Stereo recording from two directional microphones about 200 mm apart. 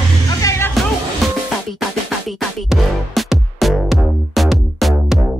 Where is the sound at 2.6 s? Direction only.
Centre (ahead or behind).